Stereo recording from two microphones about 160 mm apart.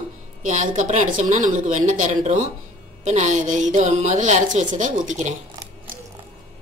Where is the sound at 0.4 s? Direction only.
55° right (ahead or behind).